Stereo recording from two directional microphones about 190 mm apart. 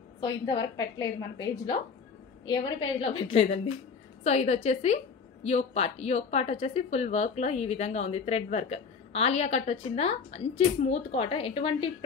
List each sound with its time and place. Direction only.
0.2 s a woman's voice: 20° left (ahead or behind)